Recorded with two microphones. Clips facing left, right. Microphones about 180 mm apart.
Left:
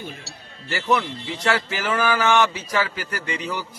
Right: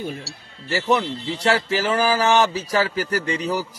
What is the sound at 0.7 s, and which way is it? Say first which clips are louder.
A man's voice: right 2 dB; 30° right (ahead or behind).